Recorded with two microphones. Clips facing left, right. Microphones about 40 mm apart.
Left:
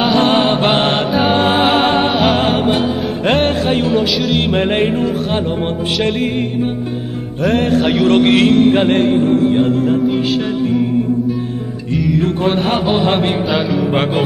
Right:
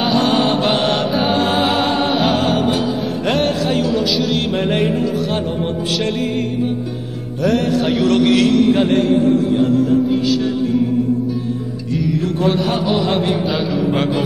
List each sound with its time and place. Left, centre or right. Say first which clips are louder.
0.2 s mantra: left 3 dB; left
1.3 s music: left 5 dB; left
7.4 s music: left 2 dB; left
12.2 s music: left 1 dB; left
13.5 s music: left 3 dB; centre